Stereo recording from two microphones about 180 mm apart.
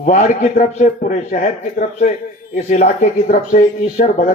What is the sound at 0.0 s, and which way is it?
A man's voice, 45° left (ahead or behind).